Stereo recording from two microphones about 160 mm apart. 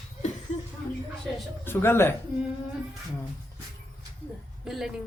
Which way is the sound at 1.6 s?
15° left (ahead or behind).